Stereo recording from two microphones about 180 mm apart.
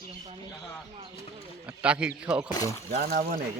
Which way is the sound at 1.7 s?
5° right (ahead or behind).